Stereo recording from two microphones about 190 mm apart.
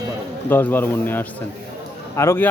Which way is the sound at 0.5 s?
10° left (ahead or behind).